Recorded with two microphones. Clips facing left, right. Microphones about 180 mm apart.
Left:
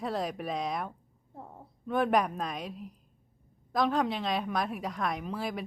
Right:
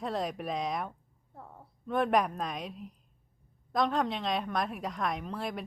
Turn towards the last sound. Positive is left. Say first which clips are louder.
# left 1 dB
turn(degrees=0)  # may be behind; listen again after turning